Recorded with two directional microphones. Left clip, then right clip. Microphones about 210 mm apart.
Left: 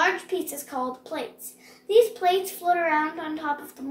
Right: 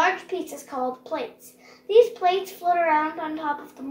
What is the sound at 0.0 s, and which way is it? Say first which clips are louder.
A child's voice: right 1 dB; 15° left (ahead or behind).